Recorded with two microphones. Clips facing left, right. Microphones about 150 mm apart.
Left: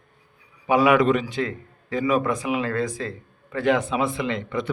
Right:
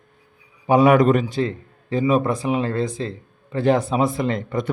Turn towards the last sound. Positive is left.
turn(degrees=-45)  # may be behind; listen again after turning